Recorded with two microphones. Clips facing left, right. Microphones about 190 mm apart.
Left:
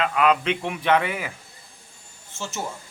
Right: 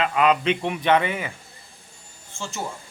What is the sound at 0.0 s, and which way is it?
A man's voice, centre (ahead or behind).